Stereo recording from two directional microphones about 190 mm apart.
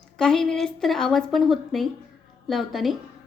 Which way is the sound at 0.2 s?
5° left (ahead or behind).